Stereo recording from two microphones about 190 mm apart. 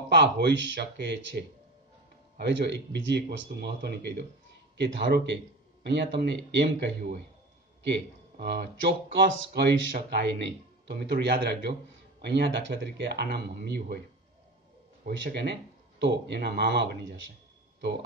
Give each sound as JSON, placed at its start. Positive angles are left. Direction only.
{"t": 0.1, "sound": "speech", "side_deg": -65}
{"t": 15.0, "sound": "speech", "side_deg": -60}